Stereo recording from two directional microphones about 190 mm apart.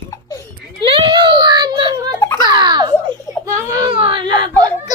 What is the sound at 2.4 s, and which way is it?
Giggle, 25° right (ahead or behind).